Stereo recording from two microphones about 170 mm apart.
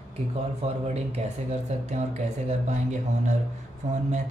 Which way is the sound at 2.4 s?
45° right (ahead or behind).